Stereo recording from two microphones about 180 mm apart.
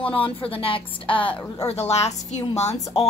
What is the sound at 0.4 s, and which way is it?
A woman's voice, 30° left (ahead or behind).